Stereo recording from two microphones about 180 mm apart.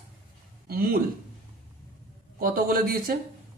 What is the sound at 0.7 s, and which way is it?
Speech, 55° right (ahead or behind).